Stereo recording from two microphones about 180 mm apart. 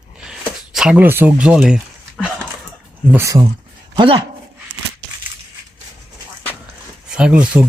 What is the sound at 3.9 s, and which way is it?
Speech, 30° right (ahead or behind).